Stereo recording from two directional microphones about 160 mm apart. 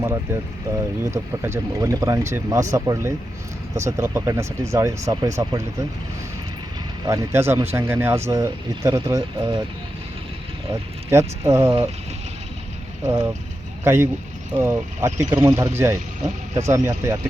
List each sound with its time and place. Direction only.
0.0 s speech: 15° right (ahead or behind)
7.1 s speech: 15° right (ahead or behind)
10.7 s speech: 15° right (ahead or behind)
13.1 s speech: 15° right (ahead or behind)